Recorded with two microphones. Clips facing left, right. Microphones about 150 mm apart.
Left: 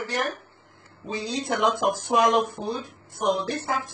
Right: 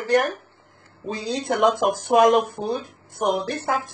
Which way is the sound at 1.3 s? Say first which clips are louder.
Right 4 dB; 55° right (ahead or behind).